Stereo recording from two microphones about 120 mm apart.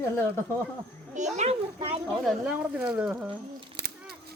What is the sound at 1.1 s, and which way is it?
Speech, 75° right (ahead or behind).